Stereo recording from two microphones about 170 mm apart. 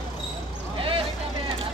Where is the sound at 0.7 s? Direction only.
30° right (ahead or behind).